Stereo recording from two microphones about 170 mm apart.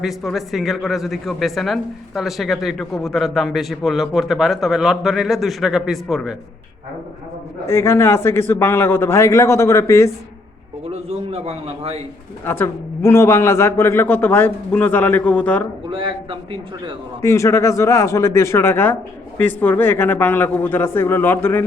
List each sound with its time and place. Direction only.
0.0 s speech: centre (ahead or behind)
7.7 s a man's voice: 15° left (ahead or behind)
10.9 s a man's voice: 35° right (ahead or behind)
12.5 s a man's voice: 15° left (ahead or behind)
15.9 s a man's voice: 30° right (ahead or behind)
17.2 s a man's voice: 15° left (ahead or behind)